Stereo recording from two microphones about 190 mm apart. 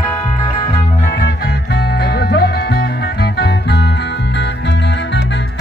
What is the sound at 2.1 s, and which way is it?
Music, 55° left (ahead or behind).